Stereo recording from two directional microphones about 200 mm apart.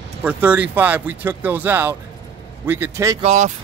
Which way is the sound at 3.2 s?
35° right (ahead or behind).